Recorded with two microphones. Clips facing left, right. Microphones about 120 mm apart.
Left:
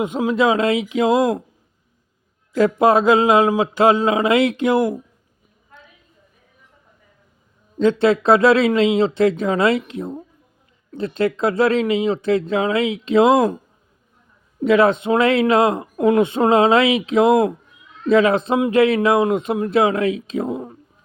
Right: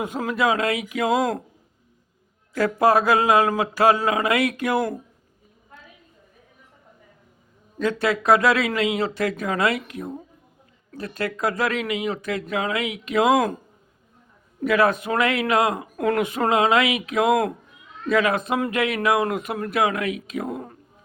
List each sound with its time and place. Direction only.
0.0 s speech: 20° left (ahead or behind)
2.6 s speech: 20° left (ahead or behind)
7.8 s speech: 25° left (ahead or behind)
14.6 s speech: 25° left (ahead or behind)